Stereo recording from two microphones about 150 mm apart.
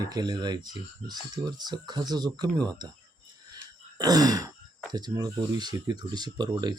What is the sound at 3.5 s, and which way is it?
Throat clearing, 25° right (ahead or behind).